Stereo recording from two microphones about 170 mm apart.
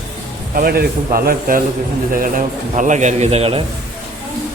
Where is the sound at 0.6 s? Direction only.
60° right (ahead or behind); by 3.6 s 35° right (ahead or behind).